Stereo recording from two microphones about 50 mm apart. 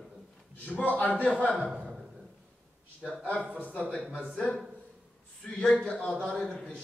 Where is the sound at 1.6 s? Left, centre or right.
Right.